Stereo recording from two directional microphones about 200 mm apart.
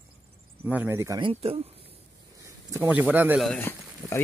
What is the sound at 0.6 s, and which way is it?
Speech, 10° right (ahead or behind).